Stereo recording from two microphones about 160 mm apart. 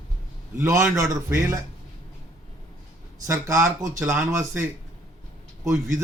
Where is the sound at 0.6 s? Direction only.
20° right (ahead or behind).